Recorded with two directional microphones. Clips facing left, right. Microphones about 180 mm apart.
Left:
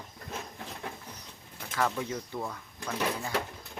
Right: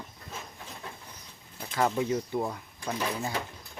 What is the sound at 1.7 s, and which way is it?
Speech, 25° right (ahead or behind).